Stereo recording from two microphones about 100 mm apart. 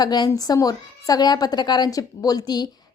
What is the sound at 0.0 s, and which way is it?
A woman's voice, 45° left (ahead or behind).